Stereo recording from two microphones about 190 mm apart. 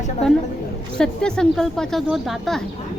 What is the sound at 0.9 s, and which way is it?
A woman's voice, 5° left (ahead or behind).